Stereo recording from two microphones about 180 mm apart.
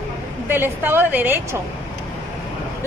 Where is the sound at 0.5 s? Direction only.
10° right (ahead or behind).